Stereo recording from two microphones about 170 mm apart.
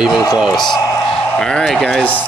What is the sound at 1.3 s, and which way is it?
Speech, 5° left (ahead or behind).